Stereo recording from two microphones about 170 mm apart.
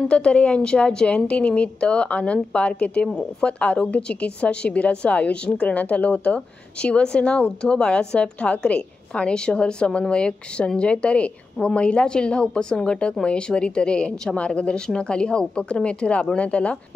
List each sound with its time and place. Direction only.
0.1 s a woman's voice: 5° left (ahead or behind)